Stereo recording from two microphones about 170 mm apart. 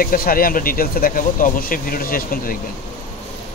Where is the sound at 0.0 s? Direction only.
60° left (ahead or behind).